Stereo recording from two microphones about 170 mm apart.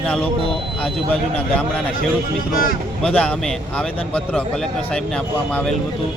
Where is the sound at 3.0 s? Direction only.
10° left (ahead or behind).